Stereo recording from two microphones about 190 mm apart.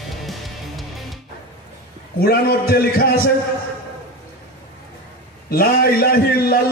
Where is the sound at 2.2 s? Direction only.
55° left (ahead or behind).